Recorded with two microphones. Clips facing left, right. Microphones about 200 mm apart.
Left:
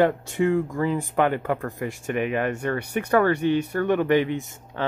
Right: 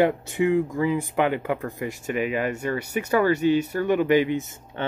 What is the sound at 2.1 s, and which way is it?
Speech, 55° left (ahead or behind).